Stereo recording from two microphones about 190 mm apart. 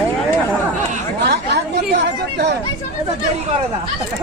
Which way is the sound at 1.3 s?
60° right (ahead or behind).